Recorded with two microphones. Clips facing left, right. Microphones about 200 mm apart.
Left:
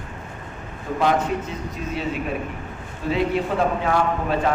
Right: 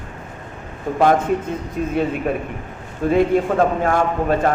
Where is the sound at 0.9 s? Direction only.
55° right (ahead or behind).